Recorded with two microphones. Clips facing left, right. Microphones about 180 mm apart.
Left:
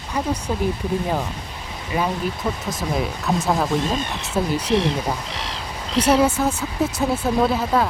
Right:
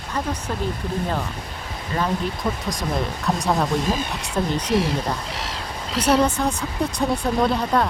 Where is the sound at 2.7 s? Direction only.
5° left (ahead or behind).